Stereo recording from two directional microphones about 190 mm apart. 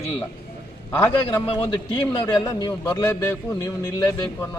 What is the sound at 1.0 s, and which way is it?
Speech, 10° left (ahead or behind).